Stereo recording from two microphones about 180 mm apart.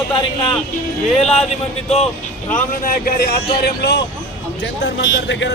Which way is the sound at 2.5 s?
50° left (ahead or behind).